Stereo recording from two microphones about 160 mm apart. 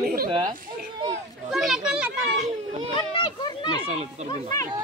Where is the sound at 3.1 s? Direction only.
30° left (ahead or behind).